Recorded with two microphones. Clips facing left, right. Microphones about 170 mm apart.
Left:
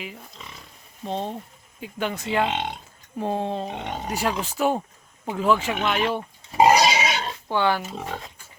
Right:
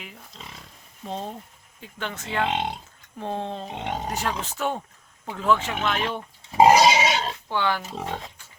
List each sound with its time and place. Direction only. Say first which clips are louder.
1.0 s speech: left 4 dB; 25° left (ahead or behind)
1.8 s speech: left 6 dB; 10° left (ahead or behind)
6.6 s pig: right 2 dB; 25° right (ahead or behind)
7.5 s speech: left 4 dB; 10° left (ahead or behind)
7.9 s speech: right 1 dB; 25° right (ahead or behind)